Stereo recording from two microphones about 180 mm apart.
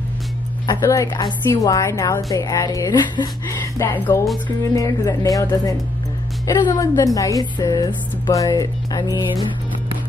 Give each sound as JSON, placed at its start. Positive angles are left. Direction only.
{"t": 0.7, "sound": "a woman's voice", "side_deg": 20}